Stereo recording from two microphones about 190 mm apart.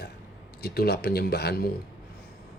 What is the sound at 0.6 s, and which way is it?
Speech, 55° left (ahead or behind).